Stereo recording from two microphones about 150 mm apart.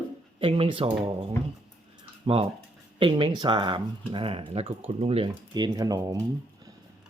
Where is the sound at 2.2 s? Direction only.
40° right (ahead or behind).